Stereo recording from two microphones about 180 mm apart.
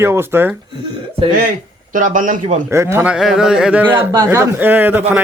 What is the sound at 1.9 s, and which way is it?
Speech, 45° right (ahead or behind).